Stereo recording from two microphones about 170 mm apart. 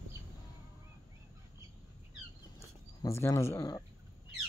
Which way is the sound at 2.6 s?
15° left (ahead or behind).